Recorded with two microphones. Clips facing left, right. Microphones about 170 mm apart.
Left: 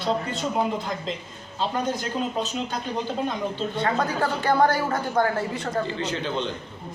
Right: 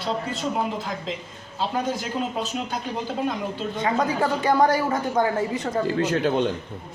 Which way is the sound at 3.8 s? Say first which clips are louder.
Right 2 dB; 15° right (ahead or behind).